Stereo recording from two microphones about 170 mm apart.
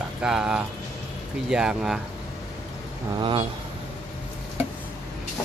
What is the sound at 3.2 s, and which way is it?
Speech, 30° right (ahead or behind).